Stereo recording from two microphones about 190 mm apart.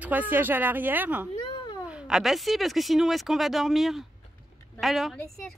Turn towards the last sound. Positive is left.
turn(degrees=0)  # may be behind; listen again after turning